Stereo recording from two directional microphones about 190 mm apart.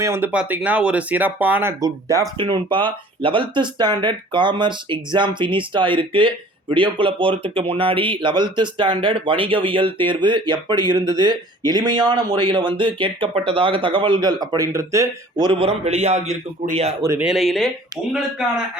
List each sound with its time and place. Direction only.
0.0 s speech: 10° right (ahead or behind); by 16.9 s 35° right (ahead or behind)
17.0 s speech: 15° right (ahead or behind)
17.2 s speech: centre (ahead or behind)